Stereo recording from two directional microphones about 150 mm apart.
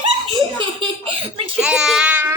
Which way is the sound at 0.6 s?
35° right (ahead or behind).